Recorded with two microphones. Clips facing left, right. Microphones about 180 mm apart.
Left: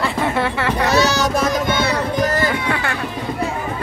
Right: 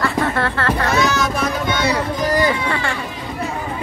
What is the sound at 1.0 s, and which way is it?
Music, 35° left (ahead or behind).